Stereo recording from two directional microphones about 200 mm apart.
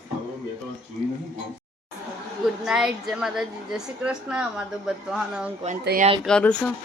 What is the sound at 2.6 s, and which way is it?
A woman's voice, centre (ahead or behind).